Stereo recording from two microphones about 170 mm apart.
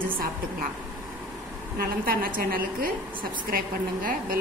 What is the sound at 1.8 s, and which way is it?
A woman's voice, 60° right (ahead or behind).